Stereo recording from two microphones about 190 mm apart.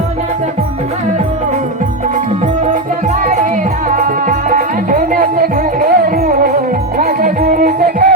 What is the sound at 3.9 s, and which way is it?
Music, 45° right (ahead or behind).